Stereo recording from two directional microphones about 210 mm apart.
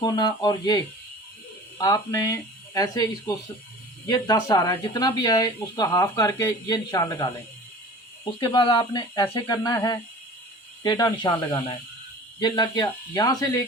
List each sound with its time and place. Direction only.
0.0 s speech: 20° left (ahead or behind)
1.8 s speech: 15° left (ahead or behind)